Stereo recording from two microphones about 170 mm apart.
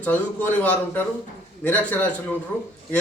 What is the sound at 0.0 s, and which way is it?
Speech, 10° left (ahead or behind).